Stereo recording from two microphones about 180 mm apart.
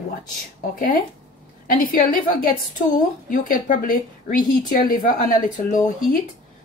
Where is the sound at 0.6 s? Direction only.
50° left (ahead or behind).